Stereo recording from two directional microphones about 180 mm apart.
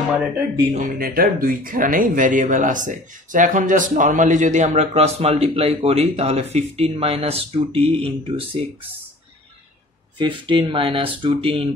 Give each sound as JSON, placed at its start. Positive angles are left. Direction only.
{"t": 0.7, "sound": "speech", "side_deg": -50}
{"t": 10.1, "sound": "speech", "side_deg": -25}